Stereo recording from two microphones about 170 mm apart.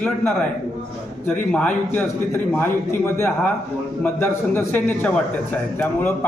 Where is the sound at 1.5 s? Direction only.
10° left (ahead or behind).